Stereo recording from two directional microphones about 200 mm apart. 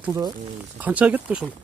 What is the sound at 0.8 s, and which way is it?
Cattle, 5° right (ahead or behind).